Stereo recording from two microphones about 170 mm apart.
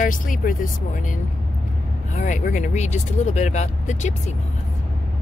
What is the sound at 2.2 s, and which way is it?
Speech, 45° left (ahead or behind).